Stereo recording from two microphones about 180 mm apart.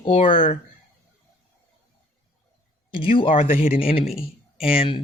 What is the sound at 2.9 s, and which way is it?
Speech, 30° left (ahead or behind).